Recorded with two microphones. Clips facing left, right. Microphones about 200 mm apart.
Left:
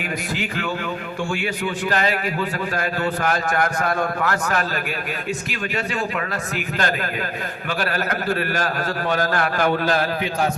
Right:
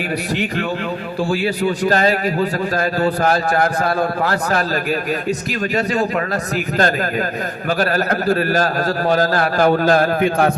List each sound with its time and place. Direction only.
1.3 s a man's voice: 35° right (ahead or behind)
7.7 s a man's voice: 40° right (ahead or behind)